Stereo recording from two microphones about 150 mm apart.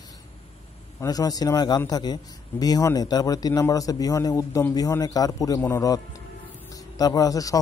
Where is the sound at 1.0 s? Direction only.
25° left (ahead or behind).